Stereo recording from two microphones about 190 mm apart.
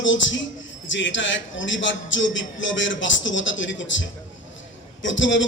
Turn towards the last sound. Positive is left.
turn(degrees=75)  # may be behind; listen again after turning